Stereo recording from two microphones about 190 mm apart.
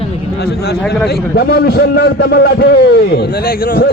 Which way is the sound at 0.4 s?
55° left (ahead or behind).